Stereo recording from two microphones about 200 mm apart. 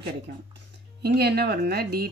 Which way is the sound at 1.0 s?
55° right (ahead or behind).